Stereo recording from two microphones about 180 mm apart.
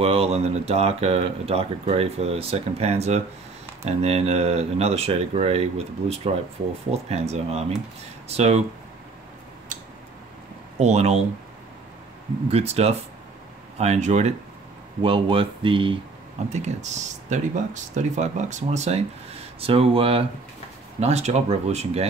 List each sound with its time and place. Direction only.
0.0 s speech: 35° right (ahead or behind)
10.8 s speech: 40° right (ahead or behind)
12.4 s speech: 35° right (ahead or behind)
16.5 s speech: 40° right (ahead or behind)